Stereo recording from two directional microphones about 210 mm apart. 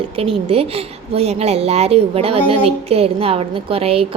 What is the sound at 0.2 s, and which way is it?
A woman's voice, 25° right (ahead or behind).